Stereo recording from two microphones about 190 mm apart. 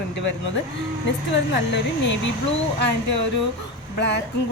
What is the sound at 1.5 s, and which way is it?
Speech, 70° left (ahead or behind).